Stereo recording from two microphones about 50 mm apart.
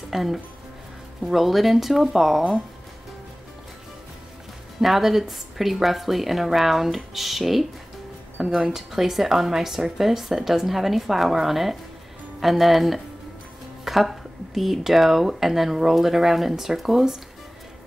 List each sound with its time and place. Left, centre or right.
0.1 s speech: centre
4.7 s speech: centre